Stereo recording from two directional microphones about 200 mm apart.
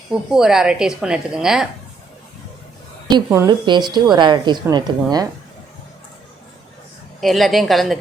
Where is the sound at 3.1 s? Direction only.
15° right (ahead or behind).